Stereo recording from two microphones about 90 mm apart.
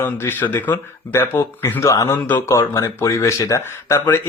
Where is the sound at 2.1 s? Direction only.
20° left (ahead or behind).